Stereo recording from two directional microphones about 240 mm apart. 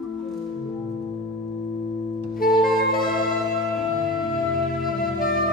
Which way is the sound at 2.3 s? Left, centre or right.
Left.